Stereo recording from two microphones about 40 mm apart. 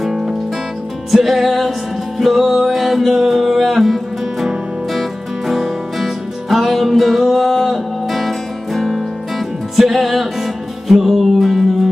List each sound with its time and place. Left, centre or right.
0.0 s music: centre
5.5 s music: centre